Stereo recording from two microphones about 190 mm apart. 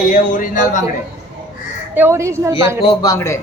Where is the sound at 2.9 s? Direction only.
20° left (ahead or behind).